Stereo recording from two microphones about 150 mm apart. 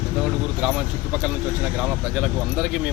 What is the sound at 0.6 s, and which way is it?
Speech, 5° right (ahead or behind).